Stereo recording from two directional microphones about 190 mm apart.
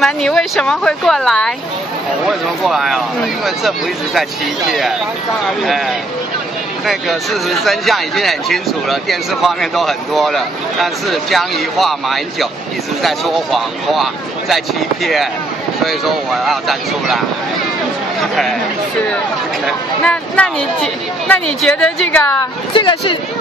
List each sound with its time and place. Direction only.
0.0 s speech: centre (ahead or behind)
16.4 s speech: centre (ahead or behind)
18.2 s chatter: centre (ahead or behind)
19.6 s speech: 5° left (ahead or behind)
22.8 s speech: 25° left (ahead or behind)